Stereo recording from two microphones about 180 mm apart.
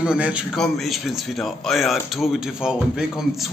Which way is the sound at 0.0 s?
5° right (ahead or behind).